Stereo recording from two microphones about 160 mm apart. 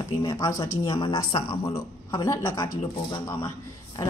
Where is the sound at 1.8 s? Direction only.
20° left (ahead or behind).